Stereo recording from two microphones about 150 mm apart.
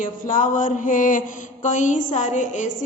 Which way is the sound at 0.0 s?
60° left (ahead or behind).